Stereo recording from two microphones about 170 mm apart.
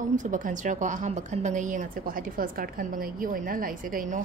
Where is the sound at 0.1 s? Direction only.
50° right (ahead or behind).